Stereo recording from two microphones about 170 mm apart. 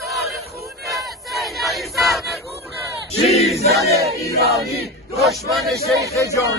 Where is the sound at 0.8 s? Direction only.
Centre (ahead or behind).